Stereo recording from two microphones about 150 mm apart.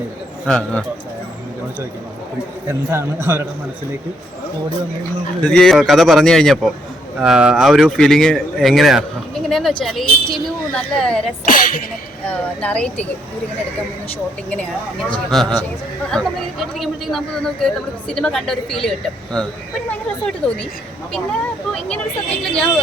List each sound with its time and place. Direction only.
0.4 s speech: 5° left (ahead or behind)
2.6 s a man's voice: 15° right (ahead or behind)
5.4 s speech: 5° left (ahead or behind)
12.3 s speech: 10° left (ahead or behind)
14.5 s speech: 10° left (ahead or behind)
19.9 s a sound: 5° left (ahead or behind)
21.8 s speech: 10° left (ahead or behind)